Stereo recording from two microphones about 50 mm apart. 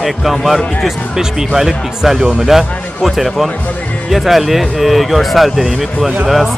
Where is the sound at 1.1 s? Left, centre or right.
Centre.